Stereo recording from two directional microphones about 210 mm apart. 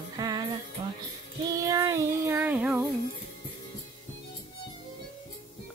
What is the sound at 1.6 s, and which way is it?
Child singing, 15° right (ahead or behind).